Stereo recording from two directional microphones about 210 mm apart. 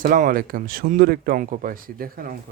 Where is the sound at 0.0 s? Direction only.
40° right (ahead or behind).